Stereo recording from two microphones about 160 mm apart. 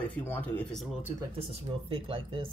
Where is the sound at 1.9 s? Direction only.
35° right (ahead or behind).